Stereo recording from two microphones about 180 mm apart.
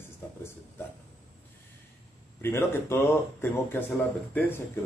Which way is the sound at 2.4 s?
15° left (ahead or behind).